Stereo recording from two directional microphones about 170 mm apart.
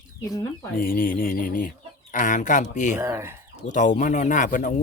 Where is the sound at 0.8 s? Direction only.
55° left (ahead or behind).